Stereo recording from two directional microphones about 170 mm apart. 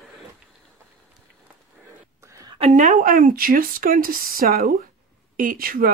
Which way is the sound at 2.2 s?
20° right (ahead or behind).